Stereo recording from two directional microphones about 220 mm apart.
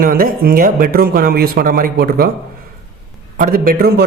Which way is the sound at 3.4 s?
40° right (ahead or behind).